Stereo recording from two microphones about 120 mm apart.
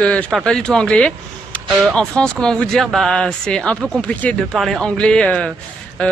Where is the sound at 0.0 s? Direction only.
10° left (ahead or behind).